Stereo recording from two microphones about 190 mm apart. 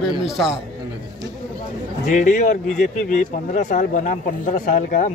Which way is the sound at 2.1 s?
40° left (ahead or behind).